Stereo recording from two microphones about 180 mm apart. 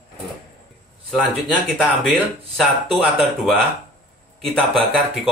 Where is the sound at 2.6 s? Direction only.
Centre (ahead or behind).